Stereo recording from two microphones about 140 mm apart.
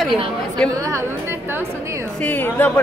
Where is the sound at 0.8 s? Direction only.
20° right (ahead or behind).